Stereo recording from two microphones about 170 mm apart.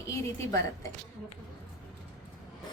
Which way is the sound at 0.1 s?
20° left (ahead or behind).